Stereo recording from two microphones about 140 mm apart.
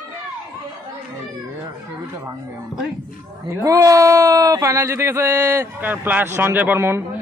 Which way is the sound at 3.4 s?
25° right (ahead or behind).